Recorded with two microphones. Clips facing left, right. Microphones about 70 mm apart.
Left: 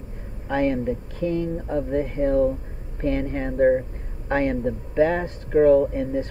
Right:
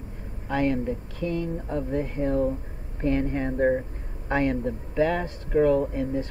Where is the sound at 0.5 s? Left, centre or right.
Left.